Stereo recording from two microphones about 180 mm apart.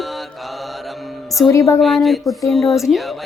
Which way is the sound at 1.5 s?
15° left (ahead or behind).